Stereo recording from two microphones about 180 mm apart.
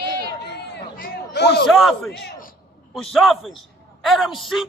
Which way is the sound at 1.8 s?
Centre (ahead or behind).